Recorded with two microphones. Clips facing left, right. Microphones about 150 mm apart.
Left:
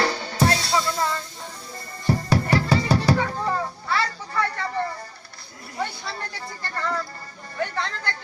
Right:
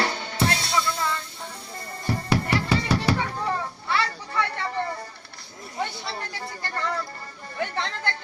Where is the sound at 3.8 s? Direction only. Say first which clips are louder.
Left 1 dB; 40° left (ahead or behind).